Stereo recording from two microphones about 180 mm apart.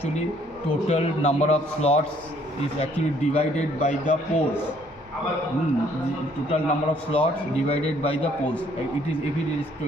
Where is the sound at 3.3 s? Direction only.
40° left (ahead or behind).